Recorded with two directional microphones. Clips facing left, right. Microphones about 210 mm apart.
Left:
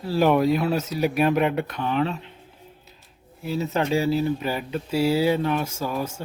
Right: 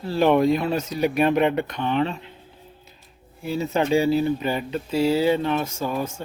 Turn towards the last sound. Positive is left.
turn(degrees=5)  # may be behind; listen again after turning